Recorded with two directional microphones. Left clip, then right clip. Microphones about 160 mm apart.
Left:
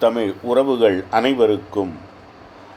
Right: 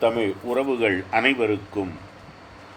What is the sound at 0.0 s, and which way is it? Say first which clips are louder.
A man's voice: left 4 dB; 45° left (ahead or behind).